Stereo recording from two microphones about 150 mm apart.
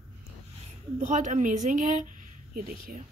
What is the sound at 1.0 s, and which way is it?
A woman's voice, 55° right (ahead or behind).